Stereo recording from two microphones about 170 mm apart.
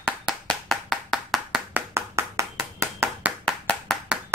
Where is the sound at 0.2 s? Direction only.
Centre (ahead or behind).